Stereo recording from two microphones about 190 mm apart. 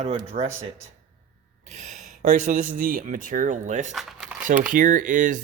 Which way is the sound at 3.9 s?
Centre (ahead or behind).